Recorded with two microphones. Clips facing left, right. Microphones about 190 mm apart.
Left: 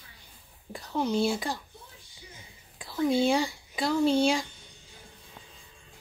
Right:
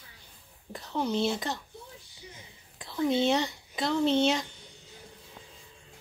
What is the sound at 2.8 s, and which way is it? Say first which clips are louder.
Speech: left 1 dB; 5° left (ahead or behind).